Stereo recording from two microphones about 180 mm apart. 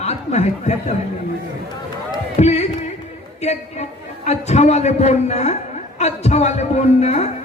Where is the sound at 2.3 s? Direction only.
35° left (ahead or behind).